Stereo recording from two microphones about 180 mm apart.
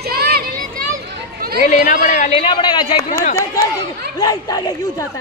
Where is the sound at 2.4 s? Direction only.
25° left (ahead or behind).